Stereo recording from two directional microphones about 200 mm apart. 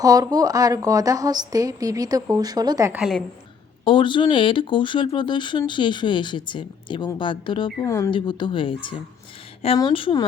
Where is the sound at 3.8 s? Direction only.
25° left (ahead or behind).